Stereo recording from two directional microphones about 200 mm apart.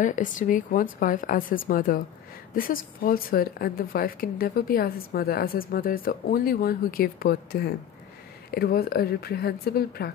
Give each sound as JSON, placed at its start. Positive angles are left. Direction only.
{"t": 0.0, "sound": "a woman's voice", "side_deg": 40}